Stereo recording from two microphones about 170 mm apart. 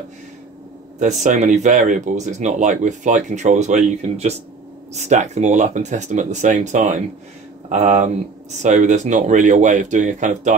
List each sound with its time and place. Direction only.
0.9 s speech: 45° right (ahead or behind)